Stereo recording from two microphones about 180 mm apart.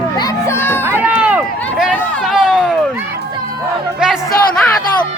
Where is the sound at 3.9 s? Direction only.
Centre (ahead or behind).